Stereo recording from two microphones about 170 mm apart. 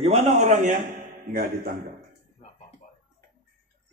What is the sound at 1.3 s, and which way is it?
Speech, 65° right (ahead or behind).